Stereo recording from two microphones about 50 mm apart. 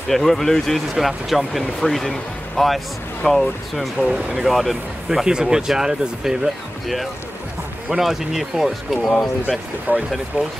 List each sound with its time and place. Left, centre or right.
0.1 s speech: centre
5.2 s speech: centre
8.0 s speech: centre
9.9 s speech: right